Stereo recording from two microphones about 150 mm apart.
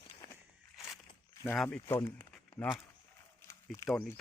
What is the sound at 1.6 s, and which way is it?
Speech, 15° left (ahead or behind).